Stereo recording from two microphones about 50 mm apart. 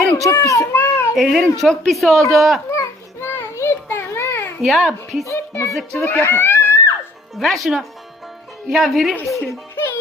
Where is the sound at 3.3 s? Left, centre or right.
Left.